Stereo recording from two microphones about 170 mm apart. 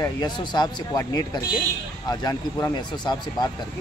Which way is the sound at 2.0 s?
25° left (ahead or behind).